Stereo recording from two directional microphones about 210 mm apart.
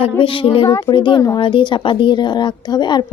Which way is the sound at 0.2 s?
25° left (ahead or behind).